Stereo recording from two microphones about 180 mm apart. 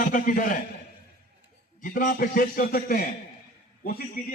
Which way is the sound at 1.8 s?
50° left (ahead or behind).